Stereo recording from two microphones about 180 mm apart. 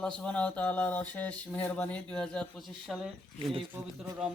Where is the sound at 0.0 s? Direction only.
5° left (ahead or behind).